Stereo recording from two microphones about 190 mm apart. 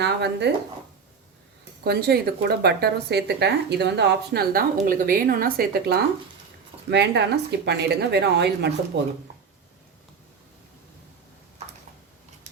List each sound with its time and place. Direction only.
0.0 s speech: 65° right (ahead or behind)
1.8 s speech: 55° right (ahead or behind)
6.9 s speech: 65° right (ahead or behind)